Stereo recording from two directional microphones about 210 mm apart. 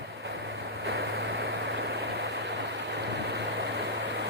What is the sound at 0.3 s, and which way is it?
Vehicle, 55° right (ahead or behind).